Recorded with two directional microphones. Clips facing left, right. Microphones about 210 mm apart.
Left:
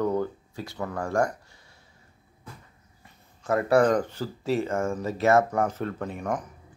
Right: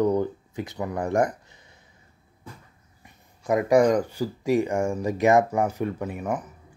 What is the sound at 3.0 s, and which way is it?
Speech, 15° right (ahead or behind).